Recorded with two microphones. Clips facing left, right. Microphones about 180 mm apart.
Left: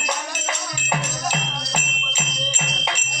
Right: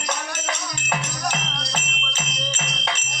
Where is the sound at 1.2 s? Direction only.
5° left (ahead or behind).